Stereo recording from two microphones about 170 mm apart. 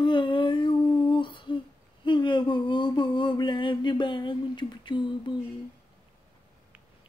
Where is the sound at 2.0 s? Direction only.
25° left (ahead or behind).